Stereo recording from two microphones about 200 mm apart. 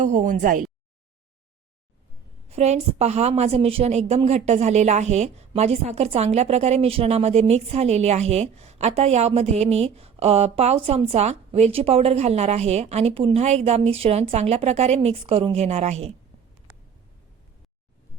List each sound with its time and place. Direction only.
0.0 s a woman's voice: 35° right (ahead or behind)
2.5 s a woman's voice: 30° right (ahead or behind)